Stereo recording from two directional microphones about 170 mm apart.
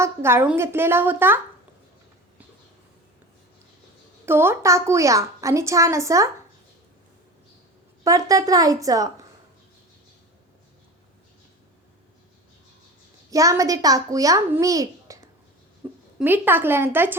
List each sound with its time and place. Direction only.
0.0 s a woman's voice: 15° right (ahead or behind)
4.3 s a woman's voice: 15° right (ahead or behind)
8.0 s a child's voice: 20° right (ahead or behind)
13.3 s a child's voice: 20° right (ahead or behind)